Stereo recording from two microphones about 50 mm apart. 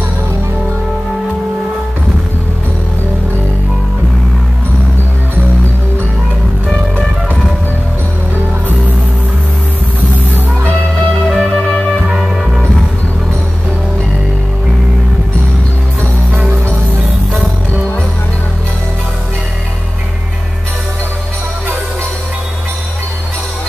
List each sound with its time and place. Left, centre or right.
11.3 s music: centre
12.2 s music: centre
16.3 s music: right